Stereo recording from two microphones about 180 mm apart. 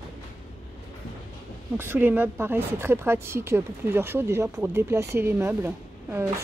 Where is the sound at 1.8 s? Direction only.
10° right (ahead or behind).